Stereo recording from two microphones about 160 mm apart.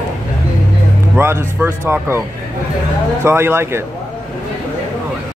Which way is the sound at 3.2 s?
15° right (ahead or behind).